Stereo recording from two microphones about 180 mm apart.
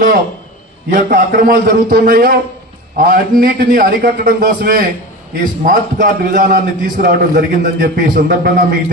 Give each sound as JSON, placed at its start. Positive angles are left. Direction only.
{"t": 0.8, "sound": "a man's voice", "side_deg": -50}